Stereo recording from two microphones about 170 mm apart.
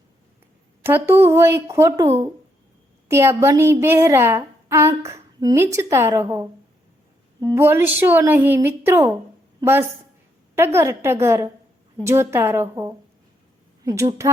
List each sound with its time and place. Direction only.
0.8 s a woman's voice: 15° right (ahead or behind)
7.5 s a woman's voice: 15° right (ahead or behind)